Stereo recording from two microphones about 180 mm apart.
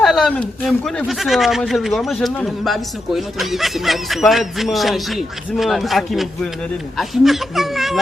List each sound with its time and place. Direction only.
0.0 s speech: centre (ahead or behind)